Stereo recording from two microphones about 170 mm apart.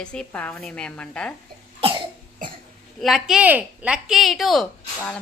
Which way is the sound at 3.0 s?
Centre (ahead or behind).